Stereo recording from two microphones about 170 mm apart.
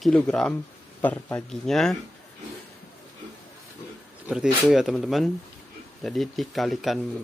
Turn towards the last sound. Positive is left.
turn(degrees=0)  # may be behind; listen again after turning